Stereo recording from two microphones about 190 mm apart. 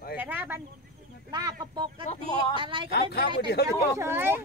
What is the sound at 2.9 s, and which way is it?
Speech, 55° left (ahead or behind).